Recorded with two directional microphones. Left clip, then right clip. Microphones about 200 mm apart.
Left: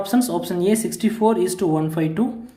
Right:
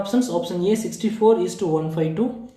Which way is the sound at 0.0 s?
50° left (ahead or behind).